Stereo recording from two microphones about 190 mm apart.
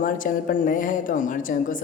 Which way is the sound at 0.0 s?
45° left (ahead or behind).